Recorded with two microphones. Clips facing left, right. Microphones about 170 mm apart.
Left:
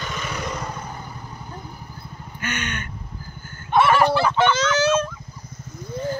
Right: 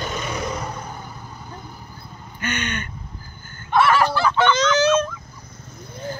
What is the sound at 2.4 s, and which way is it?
Speech, 5° left (ahead or behind).